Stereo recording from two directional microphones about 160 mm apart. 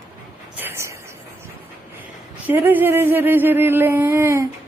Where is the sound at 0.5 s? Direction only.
15° right (ahead or behind).